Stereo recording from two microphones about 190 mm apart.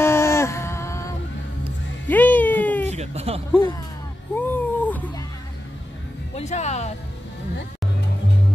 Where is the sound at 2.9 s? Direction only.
35° right (ahead or behind).